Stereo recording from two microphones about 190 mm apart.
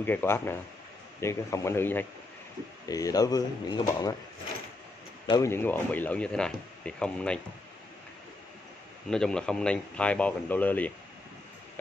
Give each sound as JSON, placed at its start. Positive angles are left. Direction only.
{"t": 0.0, "sound": "speech", "side_deg": 10}
{"t": 5.2, "sound": "speech", "side_deg": 20}
{"t": 9.1, "sound": "speech", "side_deg": 5}